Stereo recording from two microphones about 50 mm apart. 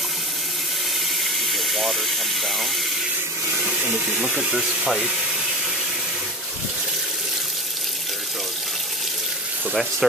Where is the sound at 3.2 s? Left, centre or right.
Right.